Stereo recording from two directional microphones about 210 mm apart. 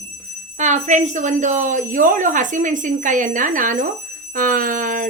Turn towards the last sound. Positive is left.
turn(degrees=-40)  # may be behind; listen again after turning